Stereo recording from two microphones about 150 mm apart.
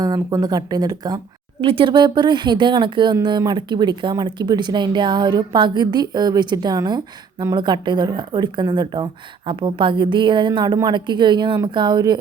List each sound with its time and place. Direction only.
0.0 s a woman's voice: 25° right (ahead or behind)